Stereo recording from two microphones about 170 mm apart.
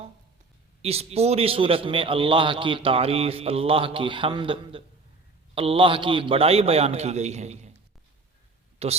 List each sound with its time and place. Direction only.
0.8 s a man's voice: 35° right (ahead or behind)
8.8 s a man's voice: 40° right (ahead or behind)